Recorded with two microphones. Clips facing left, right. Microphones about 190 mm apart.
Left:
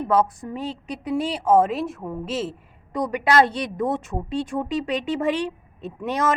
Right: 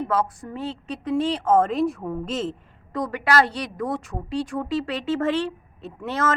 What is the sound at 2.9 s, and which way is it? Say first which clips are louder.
A woman's voice: left 2 dB; 15° left (ahead or behind).